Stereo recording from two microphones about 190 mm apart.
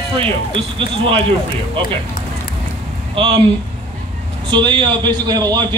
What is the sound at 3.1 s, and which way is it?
Speech, 30° right (ahead or behind).